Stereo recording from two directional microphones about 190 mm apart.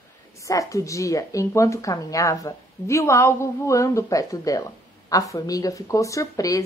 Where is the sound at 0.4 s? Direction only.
15° left (ahead or behind).